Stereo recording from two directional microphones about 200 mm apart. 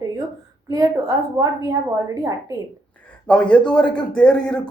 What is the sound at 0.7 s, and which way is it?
A woman's voice, 15° right (ahead or behind).